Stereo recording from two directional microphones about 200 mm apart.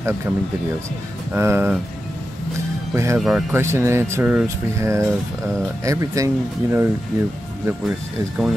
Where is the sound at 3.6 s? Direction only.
15° right (ahead or behind).